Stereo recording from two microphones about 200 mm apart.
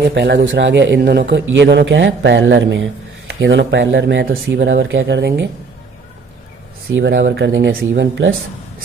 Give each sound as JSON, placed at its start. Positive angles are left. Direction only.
{"t": 0.0, "sound": "speech", "side_deg": -55}
{"t": 6.9, "sound": "speech", "side_deg": -70}